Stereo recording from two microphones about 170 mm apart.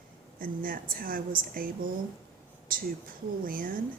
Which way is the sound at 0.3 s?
55° right (ahead or behind).